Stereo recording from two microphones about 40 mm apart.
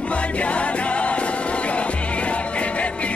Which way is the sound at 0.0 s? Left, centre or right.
Left.